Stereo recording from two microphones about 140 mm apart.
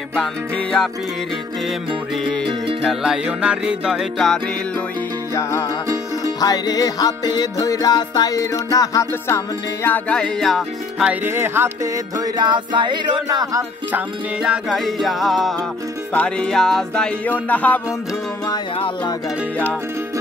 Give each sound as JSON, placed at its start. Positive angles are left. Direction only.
{"t": 0.1, "sound": "music", "side_deg": 5}
{"t": 2.8, "sound": "music", "side_deg": -5}
{"t": 5.3, "sound": "music", "side_deg": 20}
{"t": 9.8, "sound": "music", "side_deg": 10}
{"t": 11.1, "sound": "music", "side_deg": -15}
{"t": 12.4, "sound": "music", "side_deg": -35}
{"t": 13.9, "sound": "music", "side_deg": -5}